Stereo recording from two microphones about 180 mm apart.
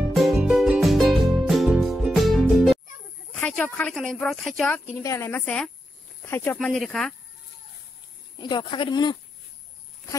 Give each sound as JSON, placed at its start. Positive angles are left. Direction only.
{"t": 0.1, "sound": "music", "side_deg": 0}
{"t": 3.3, "sound": "speech", "side_deg": 10}
{"t": 5.0, "sound": "a woman's voice", "side_deg": 15}
{"t": 8.4, "sound": "speech", "side_deg": 25}